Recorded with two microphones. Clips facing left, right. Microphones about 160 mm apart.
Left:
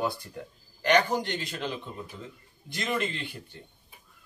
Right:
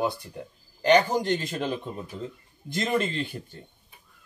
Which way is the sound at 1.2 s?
45° right (ahead or behind).